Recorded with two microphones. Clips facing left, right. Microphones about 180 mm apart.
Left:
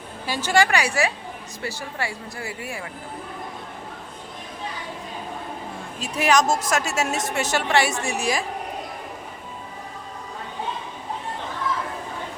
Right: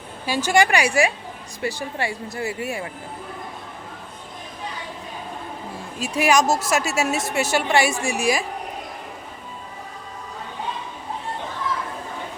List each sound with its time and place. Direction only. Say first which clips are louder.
0.3 s speech: right 2 dB; 15° right (ahead or behind)
6.0 s speech: right 1 dB; 10° right (ahead or behind)